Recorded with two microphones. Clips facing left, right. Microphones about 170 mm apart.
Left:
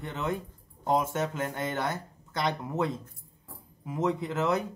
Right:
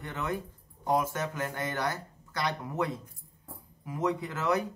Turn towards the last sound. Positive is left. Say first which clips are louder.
# left 2 dB
turn(degrees=25)  # may be behind; listen again after turning